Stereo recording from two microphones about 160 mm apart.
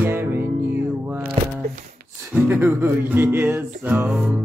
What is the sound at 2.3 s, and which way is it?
Music, 10° right (ahead or behind).